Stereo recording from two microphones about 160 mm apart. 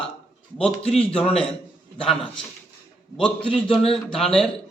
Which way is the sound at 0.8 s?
40° left (ahead or behind).